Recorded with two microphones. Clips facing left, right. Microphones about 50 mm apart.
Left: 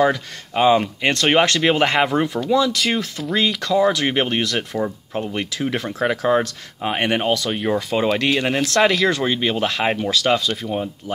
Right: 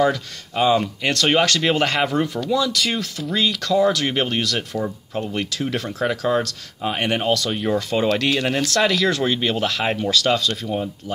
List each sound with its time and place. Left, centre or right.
0.0 s speech: left
1.6 s speech: centre
3.2 s speech: centre